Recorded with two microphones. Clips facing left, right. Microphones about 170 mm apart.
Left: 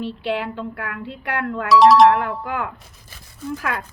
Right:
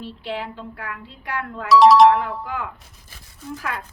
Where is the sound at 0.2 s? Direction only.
70° left (ahead or behind).